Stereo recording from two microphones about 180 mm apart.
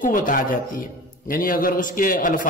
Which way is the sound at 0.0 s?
45° left (ahead or behind).